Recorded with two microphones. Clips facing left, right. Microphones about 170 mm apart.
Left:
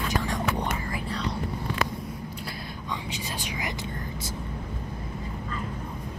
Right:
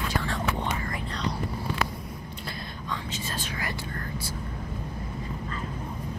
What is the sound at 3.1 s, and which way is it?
Whispering, 15° left (ahead or behind).